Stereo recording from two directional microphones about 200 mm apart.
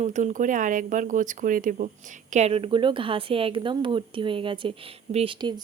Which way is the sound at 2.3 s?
30° right (ahead or behind).